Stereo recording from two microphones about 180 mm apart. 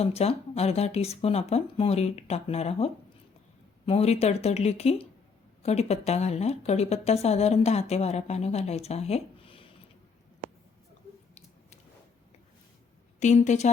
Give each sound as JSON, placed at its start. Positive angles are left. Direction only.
{"t": 0.0, "sound": "speech", "side_deg": 35}
{"t": 13.1, "sound": "speech", "side_deg": 40}